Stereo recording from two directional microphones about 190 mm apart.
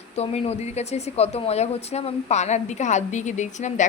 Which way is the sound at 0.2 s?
35° left (ahead or behind).